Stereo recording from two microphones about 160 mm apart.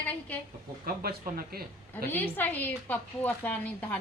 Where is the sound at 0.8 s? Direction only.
70° right (ahead or behind).